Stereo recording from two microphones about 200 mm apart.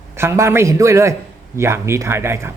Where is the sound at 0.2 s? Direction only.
15° right (ahead or behind).